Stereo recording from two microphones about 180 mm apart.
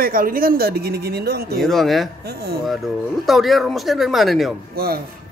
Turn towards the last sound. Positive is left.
turn(degrees=-60)  # may be behind; listen again after turning